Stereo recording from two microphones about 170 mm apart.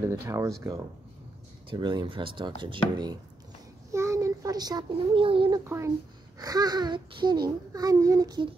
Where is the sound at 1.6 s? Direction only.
25° right (ahead or behind).